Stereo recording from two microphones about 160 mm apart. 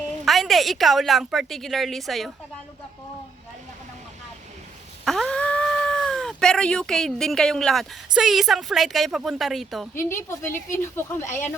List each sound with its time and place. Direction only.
0.3 s a woman's voice: centre (ahead or behind)
5.0 s speech: centre (ahead or behind)
9.9 s speech: 15° left (ahead or behind)